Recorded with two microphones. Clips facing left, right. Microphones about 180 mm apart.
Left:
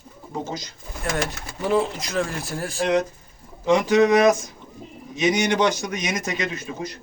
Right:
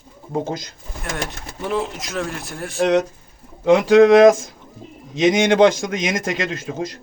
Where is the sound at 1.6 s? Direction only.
Centre (ahead or behind).